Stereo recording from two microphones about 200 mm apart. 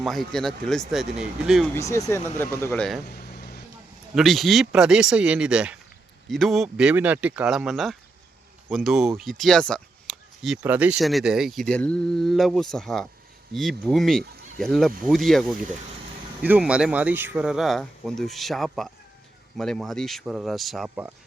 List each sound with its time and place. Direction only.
0.0 s speech: centre (ahead or behind)
1.7 s speech: 15° left (ahead or behind)
3.0 s vehicle: 50° left (ahead or behind)
4.1 s speech: centre (ahead or behind)